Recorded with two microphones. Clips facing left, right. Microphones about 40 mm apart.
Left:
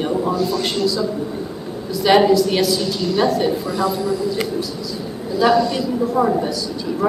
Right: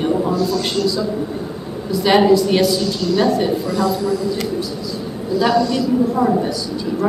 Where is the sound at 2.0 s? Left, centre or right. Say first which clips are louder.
Even; centre.